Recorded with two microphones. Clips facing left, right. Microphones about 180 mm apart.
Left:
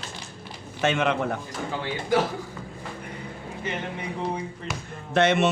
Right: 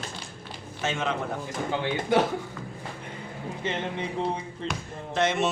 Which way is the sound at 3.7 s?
25° right (ahead or behind).